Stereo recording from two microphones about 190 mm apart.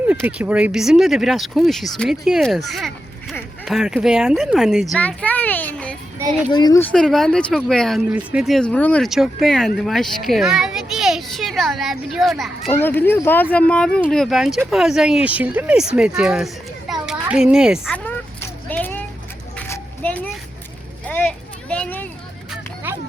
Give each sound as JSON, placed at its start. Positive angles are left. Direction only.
{"t": 0.1, "sound": "speech", "side_deg": -5}
{"t": 6.1, "sound": "speech", "side_deg": -10}
{"t": 6.5, "sound": "speech", "side_deg": 20}
{"t": 6.9, "sound": "speech", "side_deg": 5}
{"t": 16.9, "sound": "a sound", "side_deg": -5}
{"t": 17.9, "sound": "a sound", "side_deg": 10}
{"t": 21.1, "sound": "children playing", "side_deg": 10}